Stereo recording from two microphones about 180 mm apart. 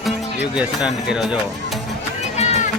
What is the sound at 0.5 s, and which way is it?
Speech, 5° right (ahead or behind).